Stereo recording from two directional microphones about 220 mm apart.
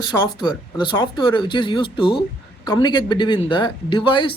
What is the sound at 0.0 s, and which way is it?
Speech, 20° left (ahead or behind).